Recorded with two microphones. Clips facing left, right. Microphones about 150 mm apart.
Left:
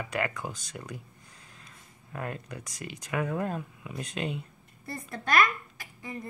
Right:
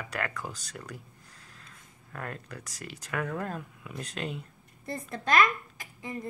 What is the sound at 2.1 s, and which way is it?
Speech, 10° left (ahead or behind).